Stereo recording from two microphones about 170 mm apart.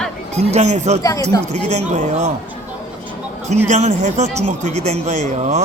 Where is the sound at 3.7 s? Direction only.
40° right (ahead or behind).